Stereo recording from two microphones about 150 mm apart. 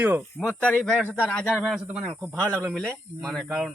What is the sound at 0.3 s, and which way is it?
Speech, 5° left (ahead or behind).